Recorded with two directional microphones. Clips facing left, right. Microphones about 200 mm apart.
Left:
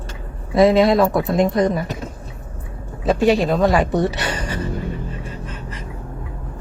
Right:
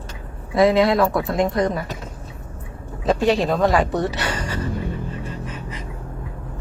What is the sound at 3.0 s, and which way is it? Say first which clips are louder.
Speech: left 2 dB; 5° left (ahead or behind).